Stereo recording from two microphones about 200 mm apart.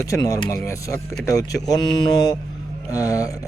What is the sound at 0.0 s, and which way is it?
Speech, 15° left (ahead or behind).